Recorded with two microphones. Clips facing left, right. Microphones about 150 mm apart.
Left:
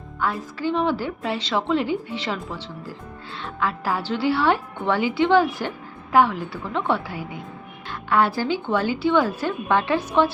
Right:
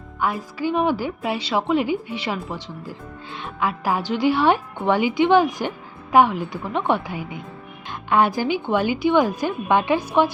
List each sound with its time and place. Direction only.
0.2 s a woman's voice: 15° right (ahead or behind)